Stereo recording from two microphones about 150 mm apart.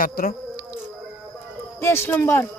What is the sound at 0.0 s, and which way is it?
Speech, 75° left (ahead or behind).